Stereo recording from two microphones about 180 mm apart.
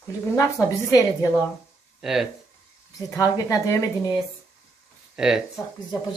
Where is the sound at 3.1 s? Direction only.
15° left (ahead or behind).